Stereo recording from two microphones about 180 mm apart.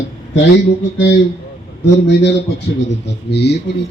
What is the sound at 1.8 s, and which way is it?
A man's voice, 75° left (ahead or behind).